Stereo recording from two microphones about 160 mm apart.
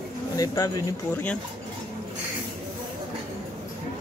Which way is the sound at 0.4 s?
20° left (ahead or behind).